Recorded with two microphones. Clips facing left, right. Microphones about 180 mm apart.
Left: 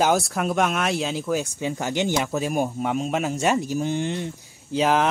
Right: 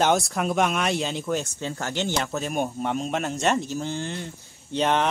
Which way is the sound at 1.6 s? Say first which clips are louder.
Left 4 dB; 15° left (ahead or behind).